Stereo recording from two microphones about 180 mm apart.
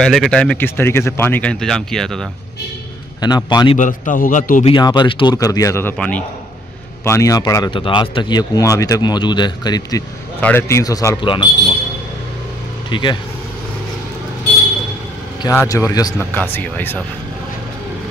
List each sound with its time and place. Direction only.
0.0 s speech: centre (ahead or behind)
3.2 s speech: 20° left (ahead or behind)
3.7 s a man's voice: 45° left (ahead or behind)
4.6 s speech: 25° left (ahead or behind); by 6.2 s 5° left (ahead or behind)
7.1 s speech: 15° left (ahead or behind)
12.9 s speech: 25° left (ahead or behind)
15.4 s speech: 15° left (ahead or behind)
16.2 s speech: 10° left (ahead or behind)